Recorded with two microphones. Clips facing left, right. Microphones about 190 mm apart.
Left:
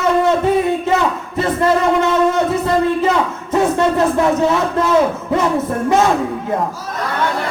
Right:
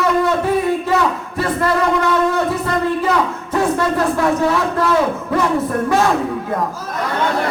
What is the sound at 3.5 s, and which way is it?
A man's voice, 20° left (ahead or behind).